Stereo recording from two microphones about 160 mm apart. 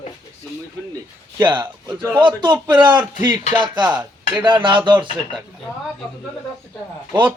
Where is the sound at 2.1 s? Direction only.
30° right (ahead or behind).